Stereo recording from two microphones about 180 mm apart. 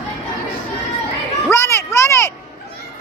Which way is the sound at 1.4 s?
15° left (ahead or behind).